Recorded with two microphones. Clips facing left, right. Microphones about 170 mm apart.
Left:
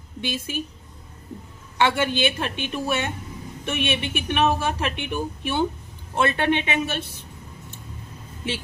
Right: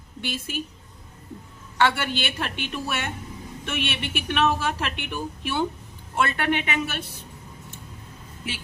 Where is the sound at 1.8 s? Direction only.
20° left (ahead or behind).